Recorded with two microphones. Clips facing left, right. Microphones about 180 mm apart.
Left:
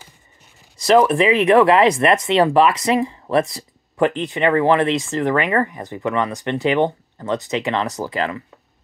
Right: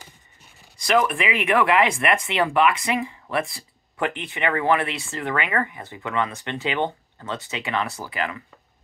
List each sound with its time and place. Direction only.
0.9 s speech: 30° left (ahead or behind)